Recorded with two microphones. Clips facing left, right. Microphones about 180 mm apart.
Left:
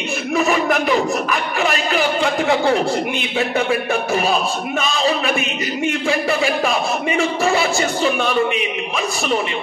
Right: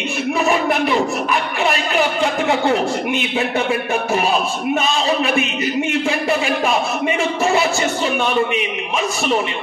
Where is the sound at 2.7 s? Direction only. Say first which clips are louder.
Even; 35° left (ahead or behind).